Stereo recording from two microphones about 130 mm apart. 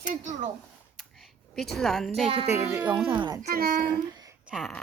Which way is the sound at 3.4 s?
90° right.